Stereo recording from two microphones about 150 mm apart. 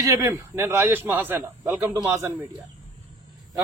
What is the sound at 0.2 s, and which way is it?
Speech, 15° right (ahead or behind).